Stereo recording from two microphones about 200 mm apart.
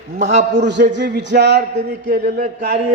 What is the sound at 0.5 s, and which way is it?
Speech, 60° right (ahead or behind).